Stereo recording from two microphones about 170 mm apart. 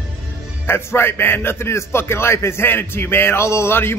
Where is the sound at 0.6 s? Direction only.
15° left (ahead or behind).